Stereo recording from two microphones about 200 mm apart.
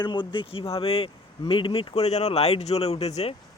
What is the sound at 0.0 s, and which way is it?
Speech, 25° left (ahead or behind).